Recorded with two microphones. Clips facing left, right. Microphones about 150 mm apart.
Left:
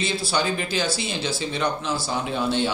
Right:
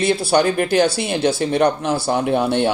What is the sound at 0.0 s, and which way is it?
Speech, 60° right (ahead or behind).